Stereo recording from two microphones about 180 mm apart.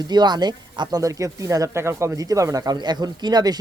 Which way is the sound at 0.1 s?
25° right (ahead or behind).